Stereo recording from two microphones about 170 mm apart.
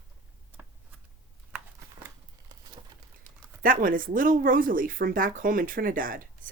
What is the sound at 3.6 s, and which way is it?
Speech, 55° right (ahead or behind).